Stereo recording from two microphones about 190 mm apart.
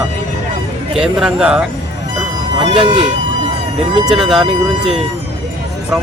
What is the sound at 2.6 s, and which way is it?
Speech, 25° right (ahead or behind).